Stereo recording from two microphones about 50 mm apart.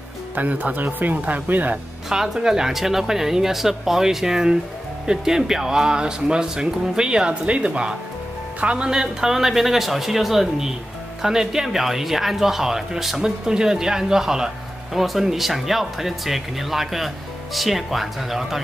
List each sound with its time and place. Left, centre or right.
0.4 s speech: right
2.0 s speech: centre; by 8.8 s right
8.8 s speech: centre